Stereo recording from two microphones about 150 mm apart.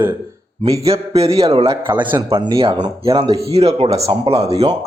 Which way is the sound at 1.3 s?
40° right (ahead or behind).